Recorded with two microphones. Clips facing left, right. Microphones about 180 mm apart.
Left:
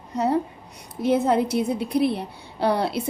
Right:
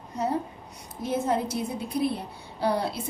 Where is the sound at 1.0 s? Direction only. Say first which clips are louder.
Left 7 dB; 75° left (ahead or behind).